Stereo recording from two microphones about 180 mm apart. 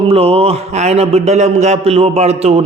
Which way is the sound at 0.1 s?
35° right (ahead or behind).